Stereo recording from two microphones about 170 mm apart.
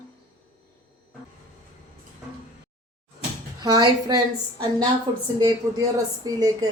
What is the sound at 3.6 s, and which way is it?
Speech, 25° right (ahead or behind).